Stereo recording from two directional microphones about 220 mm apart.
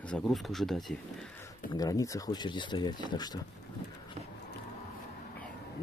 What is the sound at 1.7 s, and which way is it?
Speech, 15° left (ahead or behind).